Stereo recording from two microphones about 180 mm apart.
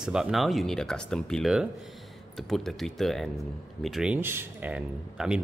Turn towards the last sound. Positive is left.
turn(degrees=-5)  # may be behind; listen again after turning